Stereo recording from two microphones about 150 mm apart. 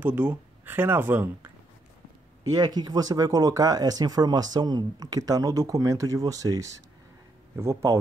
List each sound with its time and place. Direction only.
0.0 s speech: 15° right (ahead or behind)
2.5 s speech: 25° right (ahead or behind)